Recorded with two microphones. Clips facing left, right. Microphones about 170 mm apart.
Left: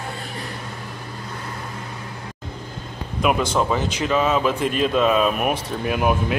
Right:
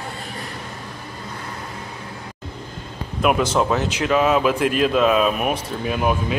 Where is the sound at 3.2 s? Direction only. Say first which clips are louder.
Right 2 dB; 5° right (ahead or behind).